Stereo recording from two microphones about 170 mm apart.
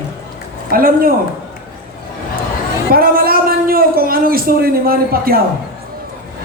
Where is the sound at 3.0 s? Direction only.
60° right (ahead or behind).